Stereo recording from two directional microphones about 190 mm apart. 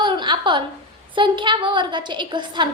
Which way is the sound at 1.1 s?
25° right (ahead or behind).